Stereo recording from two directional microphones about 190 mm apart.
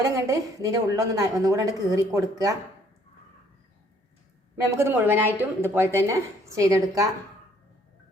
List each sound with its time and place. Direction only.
0.0 s speech: 15° right (ahead or behind)
4.8 s speech: 10° right (ahead or behind)